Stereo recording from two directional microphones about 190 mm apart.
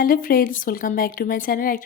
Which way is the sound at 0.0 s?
50° left (ahead or behind).